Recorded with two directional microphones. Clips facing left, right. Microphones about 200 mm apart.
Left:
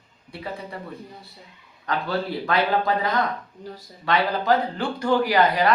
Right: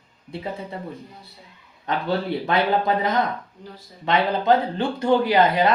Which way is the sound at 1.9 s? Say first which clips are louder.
Right 2 dB; 20° right (ahead or behind).